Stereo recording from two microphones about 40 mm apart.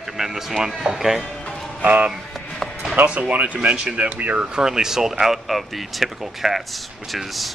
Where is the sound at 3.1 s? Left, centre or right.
Right.